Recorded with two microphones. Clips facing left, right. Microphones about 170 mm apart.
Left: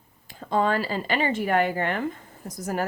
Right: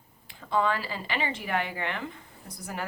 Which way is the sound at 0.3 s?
45° left (ahead or behind).